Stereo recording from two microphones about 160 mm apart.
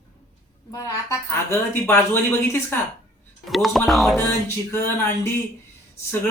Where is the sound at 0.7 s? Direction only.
20° left (ahead or behind).